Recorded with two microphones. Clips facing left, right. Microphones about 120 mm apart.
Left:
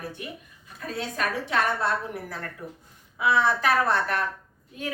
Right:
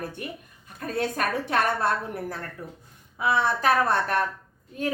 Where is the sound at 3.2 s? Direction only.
40° right (ahead or behind).